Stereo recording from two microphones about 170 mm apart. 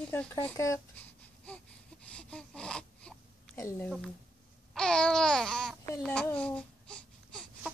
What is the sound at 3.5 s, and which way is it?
Speech, 15° left (ahead or behind).